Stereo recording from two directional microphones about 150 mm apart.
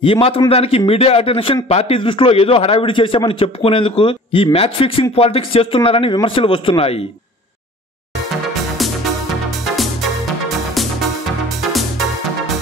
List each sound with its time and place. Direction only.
0.0 s a man's voice: 35° left (ahead or behind)